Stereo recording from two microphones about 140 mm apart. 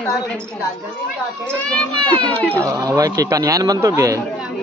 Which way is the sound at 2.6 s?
25° right (ahead or behind).